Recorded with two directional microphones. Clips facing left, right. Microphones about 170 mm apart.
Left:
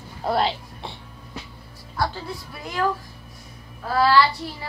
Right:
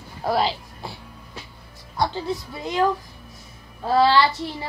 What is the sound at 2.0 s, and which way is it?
Child singing, 20° right (ahead or behind).